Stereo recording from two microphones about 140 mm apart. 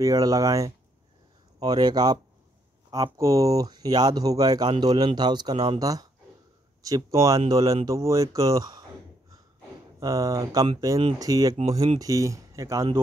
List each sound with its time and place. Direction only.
0.0 s speech: 25° right (ahead or behind)
9.9 s speech: 25° right (ahead or behind)